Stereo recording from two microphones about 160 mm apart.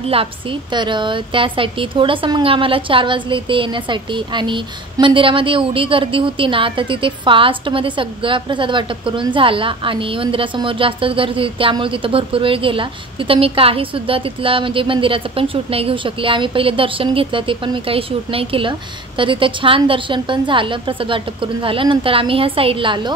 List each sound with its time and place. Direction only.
0.1 s a woman's voice: 35° right (ahead or behind)